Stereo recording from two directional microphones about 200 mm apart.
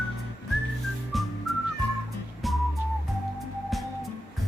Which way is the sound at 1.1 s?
Centre (ahead or behind).